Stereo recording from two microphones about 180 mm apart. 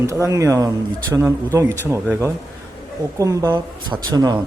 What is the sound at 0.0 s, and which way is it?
Speech, 15° right (ahead or behind).